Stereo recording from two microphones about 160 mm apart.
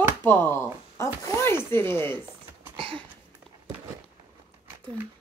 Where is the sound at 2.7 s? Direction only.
35° right (ahead or behind).